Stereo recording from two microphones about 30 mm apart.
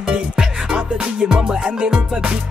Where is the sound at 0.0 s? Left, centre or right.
Right.